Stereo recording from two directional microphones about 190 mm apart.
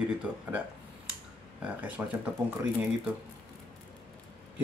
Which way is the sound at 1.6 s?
10° right (ahead or behind).